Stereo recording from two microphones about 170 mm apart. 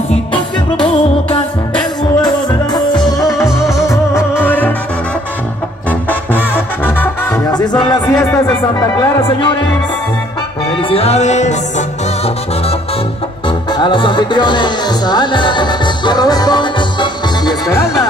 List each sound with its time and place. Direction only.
0.1 s music: 30° left (ahead or behind); by 4.7 s 10° left (ahead or behind)
7.4 s music: 25° left (ahead or behind)
8.1 s music: 10° left (ahead or behind)
8.9 s speech: 20° left (ahead or behind)
10.9 s music: 35° left (ahead or behind)
13.7 s speech: 30° left (ahead or behind)